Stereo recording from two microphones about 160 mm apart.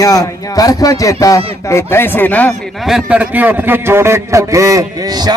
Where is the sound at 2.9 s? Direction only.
5° right (ahead or behind); by 5.3 s 25° right (ahead or behind).